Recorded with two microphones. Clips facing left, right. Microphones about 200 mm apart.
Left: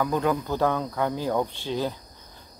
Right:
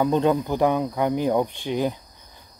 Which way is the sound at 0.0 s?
25° right (ahead or behind).